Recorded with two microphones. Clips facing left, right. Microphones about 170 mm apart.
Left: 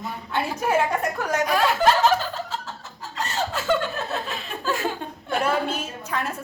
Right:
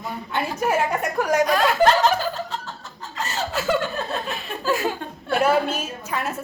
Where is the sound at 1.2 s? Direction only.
10° right (ahead or behind).